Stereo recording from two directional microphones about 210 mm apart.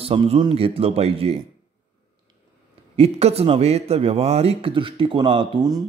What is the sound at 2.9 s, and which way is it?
A man's voice, 30° right (ahead or behind).